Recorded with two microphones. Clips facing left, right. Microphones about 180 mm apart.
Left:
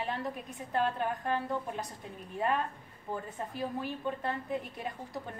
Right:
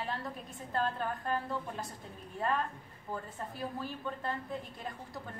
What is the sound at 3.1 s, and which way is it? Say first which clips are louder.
A woman's voice: left 3 dB; 20° left (ahead or behind).